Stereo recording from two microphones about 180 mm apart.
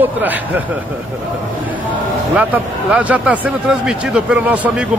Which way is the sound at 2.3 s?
5° right (ahead or behind).